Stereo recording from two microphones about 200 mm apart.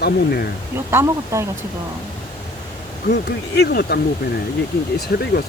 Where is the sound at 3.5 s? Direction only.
55° left (ahead or behind).